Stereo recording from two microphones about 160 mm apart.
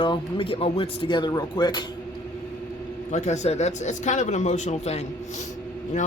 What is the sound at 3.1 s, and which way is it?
Speech, 45° left (ahead or behind).